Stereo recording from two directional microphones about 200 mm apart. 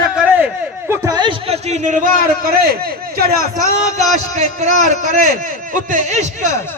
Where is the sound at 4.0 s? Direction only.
35° right (ahead or behind).